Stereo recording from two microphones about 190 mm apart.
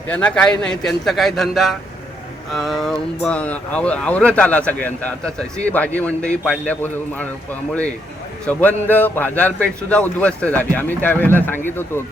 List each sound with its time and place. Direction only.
0.1 s a man's voice: 5° left (ahead or behind)
8.4 s speech: 10° left (ahead or behind)